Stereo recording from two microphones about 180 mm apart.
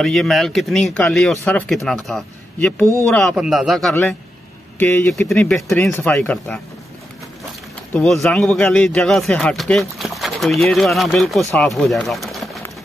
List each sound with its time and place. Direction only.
0.0 s speech: centre (ahead or behind)
3.9 s speech: 10° left (ahead or behind)
7.9 s speech: 5° left (ahead or behind)